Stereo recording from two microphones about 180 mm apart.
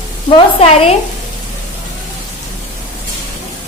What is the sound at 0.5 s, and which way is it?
Speech, 35° left (ahead or behind).